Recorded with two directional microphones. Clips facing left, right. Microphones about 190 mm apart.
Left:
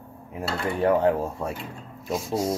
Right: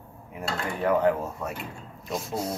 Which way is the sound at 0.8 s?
30° left (ahead or behind).